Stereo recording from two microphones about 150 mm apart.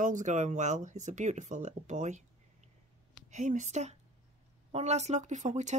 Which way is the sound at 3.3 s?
55° right (ahead or behind).